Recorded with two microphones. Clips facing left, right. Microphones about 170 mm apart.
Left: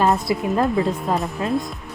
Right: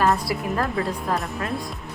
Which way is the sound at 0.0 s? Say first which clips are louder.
Left 3 dB; 20° left (ahead or behind).